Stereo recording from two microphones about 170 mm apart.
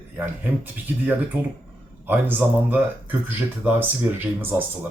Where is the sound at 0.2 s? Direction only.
10° right (ahead or behind).